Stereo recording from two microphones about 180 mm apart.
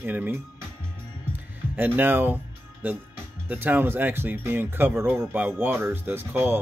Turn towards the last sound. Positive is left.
turn(degrees=-10)  # may be behind; listen again after turning